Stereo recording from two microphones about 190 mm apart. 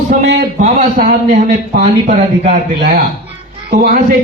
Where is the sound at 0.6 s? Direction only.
45° right (ahead or behind).